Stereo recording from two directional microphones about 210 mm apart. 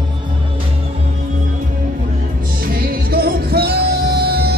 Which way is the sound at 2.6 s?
45° right (ahead or behind).